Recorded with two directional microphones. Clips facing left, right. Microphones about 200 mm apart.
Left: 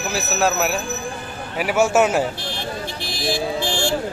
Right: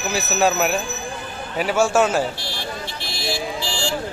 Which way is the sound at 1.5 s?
15° left (ahead or behind).